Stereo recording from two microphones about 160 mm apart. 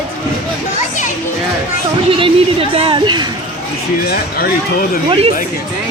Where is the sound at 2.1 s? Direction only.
35° right (ahead or behind).